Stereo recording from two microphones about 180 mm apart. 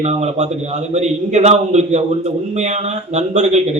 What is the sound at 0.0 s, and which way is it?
A man's voice, 35° right (ahead or behind).